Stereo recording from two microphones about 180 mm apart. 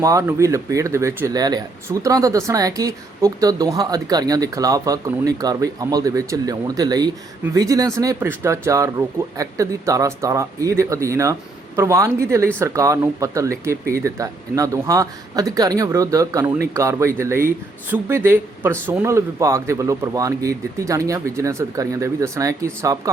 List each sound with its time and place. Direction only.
0.0 s speech: 15° right (ahead or behind)